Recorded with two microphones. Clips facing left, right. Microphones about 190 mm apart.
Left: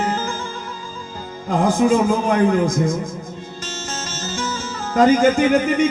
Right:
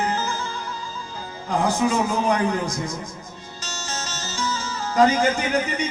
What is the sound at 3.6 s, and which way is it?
Music, 50° left (ahead or behind).